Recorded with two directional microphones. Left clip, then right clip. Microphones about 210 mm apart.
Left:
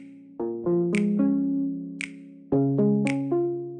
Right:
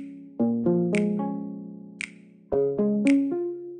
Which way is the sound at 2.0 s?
Centre (ahead or behind).